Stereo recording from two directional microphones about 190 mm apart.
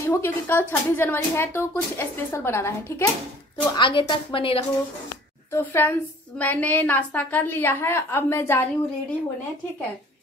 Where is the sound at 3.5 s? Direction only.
25° left (ahead or behind).